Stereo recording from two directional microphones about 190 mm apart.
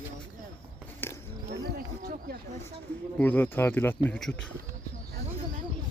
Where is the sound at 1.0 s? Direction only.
10° left (ahead or behind).